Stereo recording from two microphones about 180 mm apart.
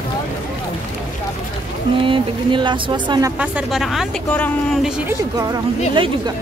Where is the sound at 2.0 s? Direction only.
25° right (ahead or behind).